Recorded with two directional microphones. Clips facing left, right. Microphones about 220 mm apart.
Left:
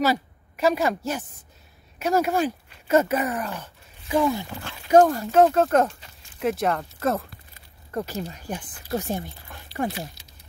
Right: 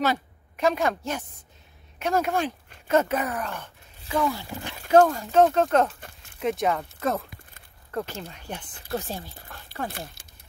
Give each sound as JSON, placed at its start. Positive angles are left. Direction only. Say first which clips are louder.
{"t": 0.0, "sound": "a woman's voice", "louder": "left 3 dB", "side_deg": 5}
{"t": 4.1, "sound": "speech", "louder": "left 4 dB", "side_deg": 20}
{"t": 4.5, "sound": "speech", "louder": "right 1 dB", "side_deg": -15}
{"t": 4.9, "sound": "speech", "louder": "left 2 dB", "side_deg": 10}
{"t": 5.9, "sound": "a sound", "louder": "right 4 dB", "side_deg": -55}
{"t": 6.4, "sound": "speech", "louder": "left 1 dB", "side_deg": 0}
{"t": 8.9, "sound": "speech", "louder": "left 4 dB", "side_deg": 20}
{"t": 10.2, "sound": "a sound", "louder": "even", "side_deg": -50}